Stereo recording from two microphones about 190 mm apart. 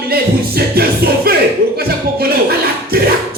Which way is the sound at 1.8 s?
55° right (ahead or behind).